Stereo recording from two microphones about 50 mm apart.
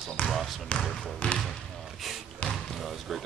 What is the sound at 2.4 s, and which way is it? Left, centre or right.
Basketball bounce, centre.